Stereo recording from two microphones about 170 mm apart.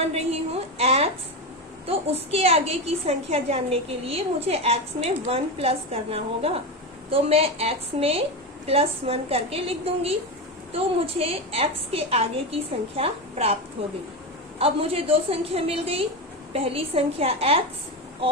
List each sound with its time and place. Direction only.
0.0 s a woman's voice: 40° right (ahead or behind)
14.6 s a woman's voice: 35° right (ahead or behind)